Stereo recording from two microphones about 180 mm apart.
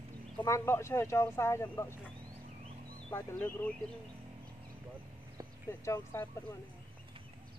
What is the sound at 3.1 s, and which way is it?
Speech, 15° left (ahead or behind).